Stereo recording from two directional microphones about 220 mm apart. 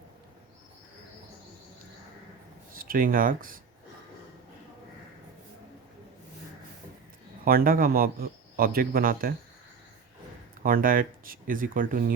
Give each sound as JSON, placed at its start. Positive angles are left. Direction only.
{"t": 2.7, "sound": "speech", "side_deg": -40}
{"t": 7.4, "sound": "speech", "side_deg": -40}
{"t": 10.6, "sound": "speech", "side_deg": -40}